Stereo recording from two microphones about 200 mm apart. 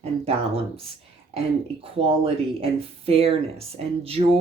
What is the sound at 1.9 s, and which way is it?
Speech, 30° right (ahead or behind).